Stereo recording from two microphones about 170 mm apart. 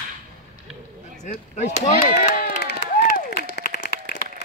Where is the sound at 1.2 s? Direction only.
45° left (ahead or behind).